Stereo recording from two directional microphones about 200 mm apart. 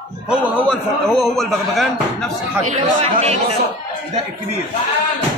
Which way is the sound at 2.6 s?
35° right (ahead or behind).